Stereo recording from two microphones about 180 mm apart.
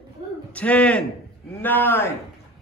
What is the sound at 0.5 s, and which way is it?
Speech, 5° left (ahead or behind).